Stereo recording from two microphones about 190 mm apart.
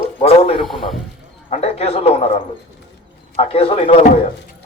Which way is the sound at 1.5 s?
35° left (ahead or behind).